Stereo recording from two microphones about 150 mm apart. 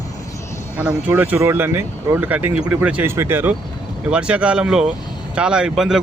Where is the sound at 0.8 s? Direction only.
10° right (ahead or behind).